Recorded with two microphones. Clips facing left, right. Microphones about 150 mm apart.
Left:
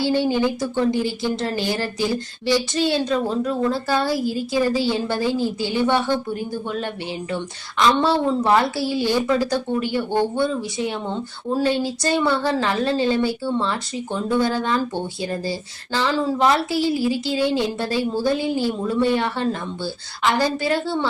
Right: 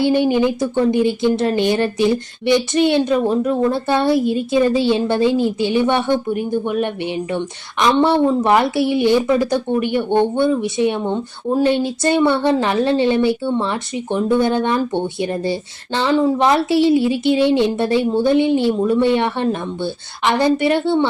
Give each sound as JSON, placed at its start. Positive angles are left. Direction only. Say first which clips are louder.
{"t": 0.0, "sound": "speech", "louder": "right 4 dB", "side_deg": -20}